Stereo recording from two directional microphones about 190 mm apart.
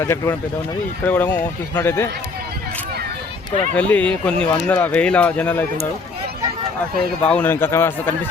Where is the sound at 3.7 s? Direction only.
5° left (ahead or behind).